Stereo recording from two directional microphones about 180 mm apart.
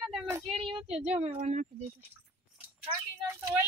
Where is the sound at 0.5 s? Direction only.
30° right (ahead or behind).